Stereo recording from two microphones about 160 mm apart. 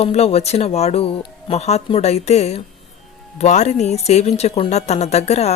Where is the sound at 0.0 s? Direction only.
40° left (ahead or behind).